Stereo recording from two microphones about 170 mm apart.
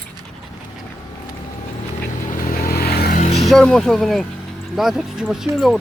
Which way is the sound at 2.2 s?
55° left (ahead or behind).